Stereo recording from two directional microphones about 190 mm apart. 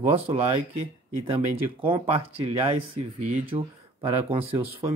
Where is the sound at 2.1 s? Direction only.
30° right (ahead or behind).